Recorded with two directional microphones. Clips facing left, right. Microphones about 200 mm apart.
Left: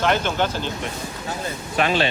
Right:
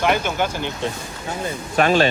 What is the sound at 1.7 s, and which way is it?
Speech, 45° right (ahead or behind).